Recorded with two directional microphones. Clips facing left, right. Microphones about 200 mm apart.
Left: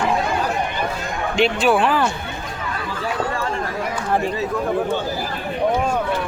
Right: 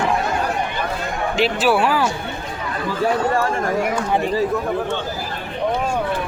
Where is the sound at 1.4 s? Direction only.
5° right (ahead or behind).